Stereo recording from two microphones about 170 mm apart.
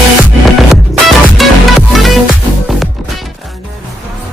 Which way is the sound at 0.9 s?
Centre (ahead or behind).